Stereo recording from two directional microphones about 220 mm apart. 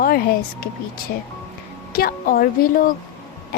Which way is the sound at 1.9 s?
40° left (ahead or behind).